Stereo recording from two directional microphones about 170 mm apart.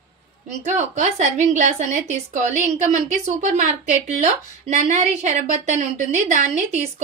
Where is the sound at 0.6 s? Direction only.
45° right (ahead or behind).